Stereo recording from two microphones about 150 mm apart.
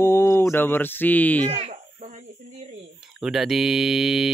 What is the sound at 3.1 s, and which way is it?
Speech, 5° right (ahead or behind).